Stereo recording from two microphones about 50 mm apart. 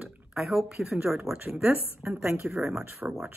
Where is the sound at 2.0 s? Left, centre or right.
Right.